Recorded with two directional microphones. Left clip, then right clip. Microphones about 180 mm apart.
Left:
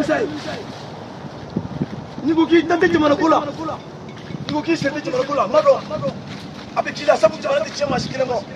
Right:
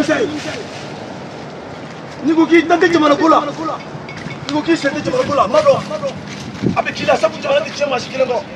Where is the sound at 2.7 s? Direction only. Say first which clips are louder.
Right 4 dB; 30° left (ahead or behind).